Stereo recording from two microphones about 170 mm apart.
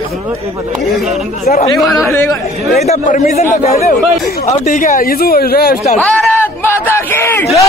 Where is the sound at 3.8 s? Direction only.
55° left (ahead or behind).